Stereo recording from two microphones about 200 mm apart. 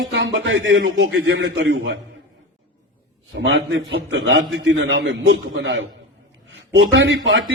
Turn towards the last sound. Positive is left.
turn(degrees=-65)  # may be behind; listen again after turning